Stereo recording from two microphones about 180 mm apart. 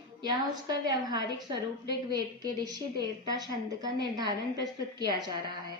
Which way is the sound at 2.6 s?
20° right (ahead or behind).